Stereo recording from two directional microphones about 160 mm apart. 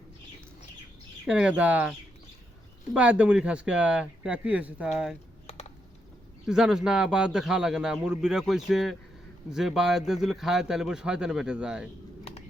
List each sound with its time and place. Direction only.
1.3 s a man's voice: 5° right (ahead or behind)
5.5 s typing: 40° left (ahead or behind)
6.4 s a man's voice: 5° right (ahead or behind)